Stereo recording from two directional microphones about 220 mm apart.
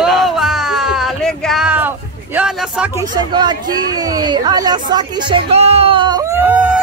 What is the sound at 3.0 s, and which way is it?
Speech, 20° right (ahead or behind).